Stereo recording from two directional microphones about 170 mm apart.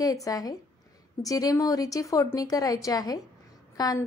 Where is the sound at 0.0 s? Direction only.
20° left (ahead or behind).